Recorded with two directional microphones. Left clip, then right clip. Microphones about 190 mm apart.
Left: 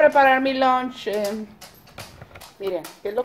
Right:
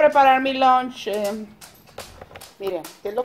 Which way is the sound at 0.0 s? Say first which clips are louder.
Right 1 dB; 10° right (ahead or behind).